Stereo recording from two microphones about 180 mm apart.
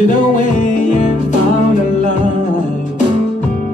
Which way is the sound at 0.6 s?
45° left (ahead or behind).